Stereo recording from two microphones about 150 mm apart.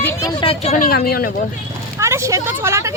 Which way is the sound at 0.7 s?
75° left (ahead or behind).